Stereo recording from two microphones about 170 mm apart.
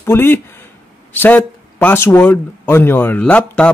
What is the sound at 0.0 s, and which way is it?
Speech, 15° left (ahead or behind).